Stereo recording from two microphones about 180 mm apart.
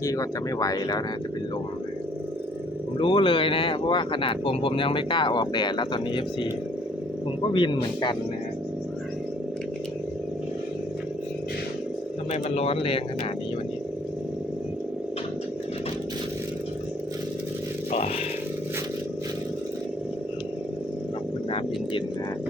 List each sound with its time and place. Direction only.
0.0 s speech: 20° left (ahead or behind)
3.0 s speech: 30° left (ahead or behind)
7.5 s speech: 25° left (ahead or behind)
12.3 s speech: 35° left (ahead or behind)